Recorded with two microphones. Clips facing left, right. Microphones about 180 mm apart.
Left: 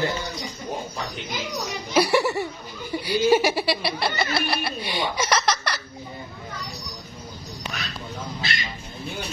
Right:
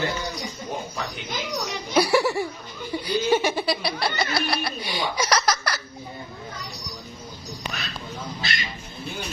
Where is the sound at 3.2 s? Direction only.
10° left (ahead or behind).